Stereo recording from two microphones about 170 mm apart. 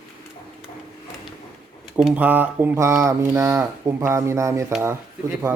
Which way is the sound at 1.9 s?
10° right (ahead or behind).